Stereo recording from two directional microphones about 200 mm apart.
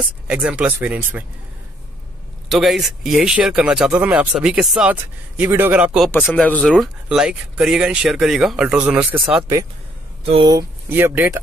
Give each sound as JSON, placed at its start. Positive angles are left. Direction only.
{"t": 0.3, "sound": "speech", "side_deg": -5}
{"t": 2.5, "sound": "speech", "side_deg": 0}
{"t": 10.2, "sound": "speech", "side_deg": -25}
{"t": 10.9, "sound": "speech", "side_deg": -10}